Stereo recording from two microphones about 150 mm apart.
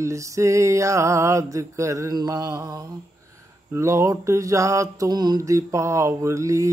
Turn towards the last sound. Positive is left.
turn(degrees=-20)  # may be behind; listen again after turning